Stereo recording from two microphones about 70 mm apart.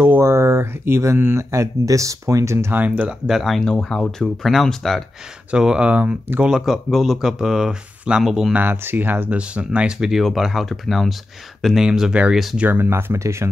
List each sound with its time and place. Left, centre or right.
0.2 s speech: right
2.7 s speech: right
3.3 s speech: centre
5.5 s speech: centre
6.6 s speech: centre
8.5 s speech: right
9.4 s speech: centre
12.5 s speech: right